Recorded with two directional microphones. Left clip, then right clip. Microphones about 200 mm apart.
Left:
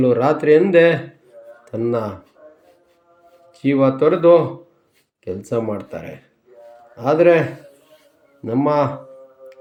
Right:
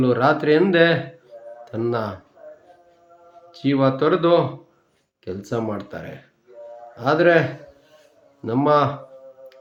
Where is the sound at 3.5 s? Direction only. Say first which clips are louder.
Left 3 dB; 5° left (ahead or behind).